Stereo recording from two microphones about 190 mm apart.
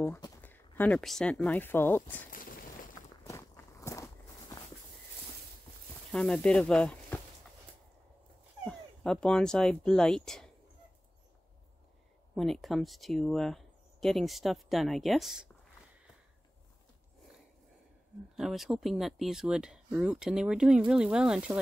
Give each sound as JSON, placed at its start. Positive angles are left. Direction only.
{"t": 0.0, "sound": "speech", "side_deg": 15}
{"t": 2.3, "sound": "a sound", "side_deg": 45}
{"t": 3.3, "sound": "walk", "side_deg": 15}
{"t": 6.1, "sound": "speech", "side_deg": 5}
{"t": 8.6, "sound": "speech", "side_deg": 5}
{"t": 12.4, "sound": "speech", "side_deg": 0}
{"t": 18.3, "sound": "speech", "side_deg": 0}